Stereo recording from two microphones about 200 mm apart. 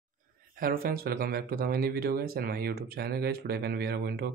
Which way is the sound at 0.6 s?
45° right (ahead or behind).